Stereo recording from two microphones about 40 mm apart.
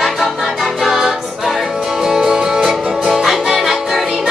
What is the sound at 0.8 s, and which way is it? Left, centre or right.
Music, centre.